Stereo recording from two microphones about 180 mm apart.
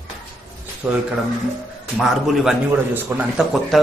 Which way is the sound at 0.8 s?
5° right (ahead or behind).